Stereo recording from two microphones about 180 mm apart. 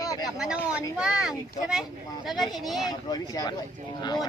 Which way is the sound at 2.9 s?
20° left (ahead or behind).